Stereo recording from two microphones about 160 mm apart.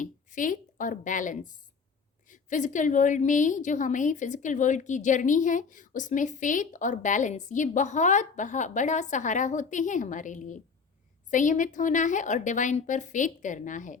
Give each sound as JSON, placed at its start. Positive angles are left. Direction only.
{"t": 0.0, "sound": "a woman's voice", "side_deg": 55}